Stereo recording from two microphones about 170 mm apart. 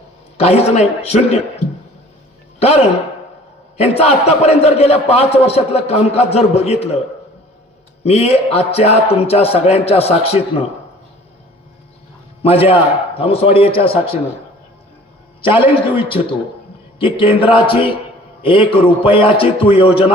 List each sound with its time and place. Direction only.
0.3 s a man's voice: 40° left (ahead or behind)
8.0 s a man's voice: 35° left (ahead or behind)
12.4 s a man's voice: 35° left (ahead or behind)
15.4 s a man's voice: 30° left (ahead or behind)